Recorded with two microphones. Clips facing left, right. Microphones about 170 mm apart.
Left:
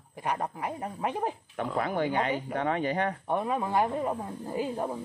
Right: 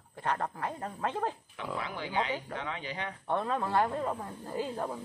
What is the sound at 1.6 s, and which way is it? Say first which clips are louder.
Speech: left 9 dB; 50° left (ahead or behind).